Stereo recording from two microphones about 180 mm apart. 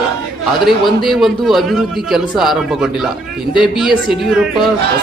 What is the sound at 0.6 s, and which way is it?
Speech, centre (ahead or behind).